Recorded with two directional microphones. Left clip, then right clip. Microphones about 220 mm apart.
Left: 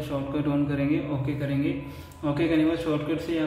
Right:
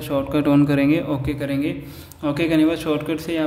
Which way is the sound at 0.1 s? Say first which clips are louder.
Right 10 dB; 45° right (ahead or behind).